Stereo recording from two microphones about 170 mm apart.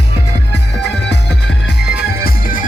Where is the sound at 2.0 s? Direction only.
65° left (ahead or behind).